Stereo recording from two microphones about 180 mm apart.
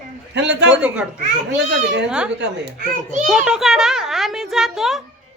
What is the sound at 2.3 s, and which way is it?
Speech, 70° right (ahead or behind).